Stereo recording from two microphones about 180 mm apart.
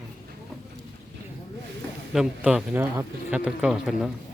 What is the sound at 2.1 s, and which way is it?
Speech, 5° right (ahead or behind).